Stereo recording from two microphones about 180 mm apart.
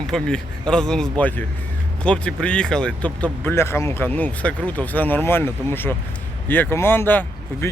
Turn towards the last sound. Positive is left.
turn(degrees=10)  # may be behind; listen again after turning